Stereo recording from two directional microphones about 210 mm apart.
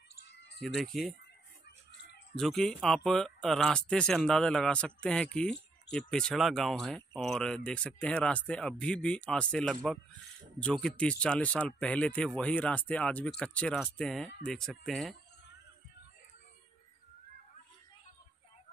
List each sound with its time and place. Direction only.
0.1 s a sound: 55° left (ahead or behind)
0.7 s speech: centre (ahead or behind)
2.3 s speech: centre (ahead or behind)